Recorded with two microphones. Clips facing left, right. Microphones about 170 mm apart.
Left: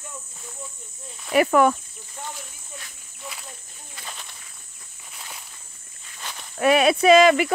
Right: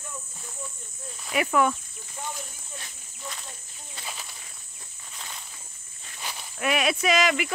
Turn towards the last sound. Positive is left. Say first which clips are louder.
# left 9 dB
turn(degrees=30)  # may be behind; listen again after turning